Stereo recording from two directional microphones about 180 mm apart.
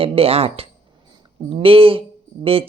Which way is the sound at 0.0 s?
30° right (ahead or behind).